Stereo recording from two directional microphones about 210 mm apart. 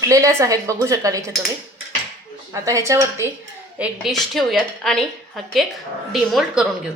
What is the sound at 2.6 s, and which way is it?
A woman's voice, 15° right (ahead or behind).